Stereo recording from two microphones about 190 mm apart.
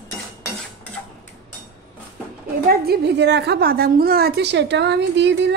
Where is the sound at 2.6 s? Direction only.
55° right (ahead or behind).